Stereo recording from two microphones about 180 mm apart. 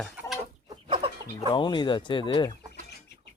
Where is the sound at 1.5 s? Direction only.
25° left (ahead or behind).